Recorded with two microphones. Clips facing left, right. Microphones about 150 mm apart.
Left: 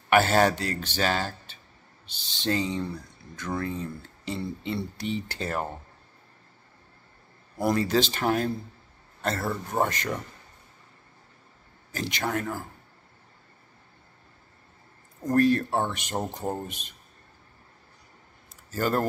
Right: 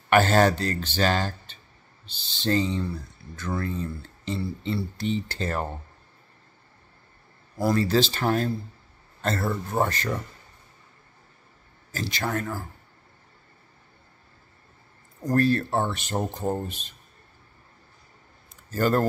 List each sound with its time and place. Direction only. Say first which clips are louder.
0.1 s speech: right 2 dB; 10° left (ahead or behind)
7.6 s a man's voice: right 2 dB; 15° left (ahead or behind)
11.9 s speech: even; 20° left (ahead or behind)
15.3 s speech: even; 15° left (ahead or behind)
18.7 s speech: right 3 dB; 10° left (ahead or behind)